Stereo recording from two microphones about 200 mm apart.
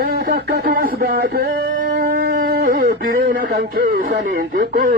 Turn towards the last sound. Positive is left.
turn(degrees=-45)  # may be behind; listen again after turning